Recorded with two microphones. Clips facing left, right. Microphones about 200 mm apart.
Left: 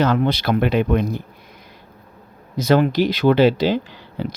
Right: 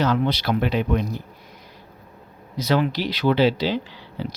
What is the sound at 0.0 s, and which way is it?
Speech, 55° left (ahead or behind).